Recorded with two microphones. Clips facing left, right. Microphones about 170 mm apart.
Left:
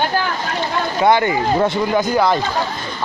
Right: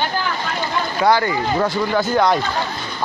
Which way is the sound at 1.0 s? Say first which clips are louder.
Left 2 dB; 20° left (ahead or behind).